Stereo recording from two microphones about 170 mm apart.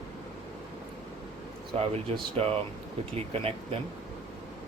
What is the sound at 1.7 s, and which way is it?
Speech, 35° right (ahead or behind).